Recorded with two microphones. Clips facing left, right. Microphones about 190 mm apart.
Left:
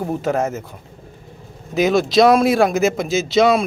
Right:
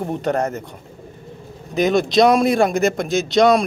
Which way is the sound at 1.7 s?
Centre (ahead or behind).